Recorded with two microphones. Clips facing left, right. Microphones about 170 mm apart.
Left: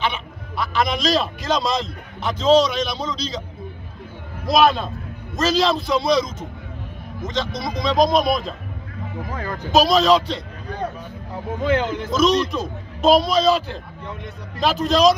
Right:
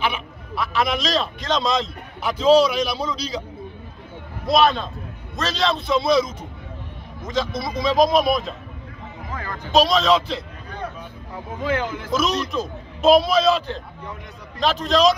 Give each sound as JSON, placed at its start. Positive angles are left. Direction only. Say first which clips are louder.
{"t": 0.0, "sound": "a man's voice", "louder": "even", "side_deg": -5}
{"t": 4.5, "sound": "a man's voice", "louder": "left 1 dB", "side_deg": 5}
{"t": 9.3, "sound": "a man's voice", "louder": "left 2 dB", "side_deg": 20}
{"t": 9.7, "sound": "a man's voice", "louder": "left 2 dB", "side_deg": 5}
{"t": 11.6, "sound": "speech", "louder": "left 3 dB", "side_deg": 20}
{"t": 12.1, "sound": "a man's voice", "louder": "left 5 dB", "side_deg": -5}